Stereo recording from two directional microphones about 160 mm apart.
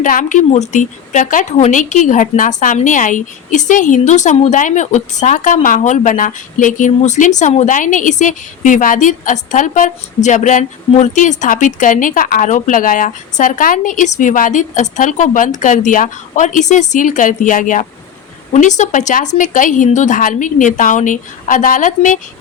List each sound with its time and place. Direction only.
0.0 s a woman's voice: 55° left (ahead or behind)